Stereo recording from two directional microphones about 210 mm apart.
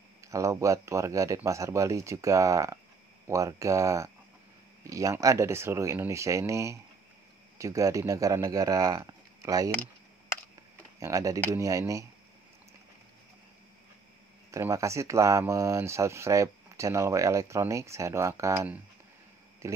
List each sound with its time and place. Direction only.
0.3 s speech: 15° right (ahead or behind)
11.0 s speech: 15° right (ahead or behind)
14.5 s speech: 15° right (ahead or behind)